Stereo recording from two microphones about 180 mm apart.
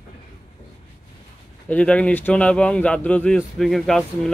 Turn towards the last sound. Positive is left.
turn(degrees=0)  # may be behind; listen again after turning